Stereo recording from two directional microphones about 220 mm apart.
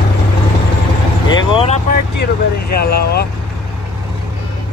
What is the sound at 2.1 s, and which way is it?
Speech, 45° left (ahead or behind).